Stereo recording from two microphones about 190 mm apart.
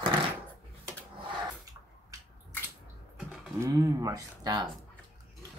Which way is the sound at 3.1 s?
5° right (ahead or behind).